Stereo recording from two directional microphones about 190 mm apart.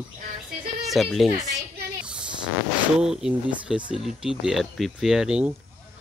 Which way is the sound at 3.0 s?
5° right (ahead or behind).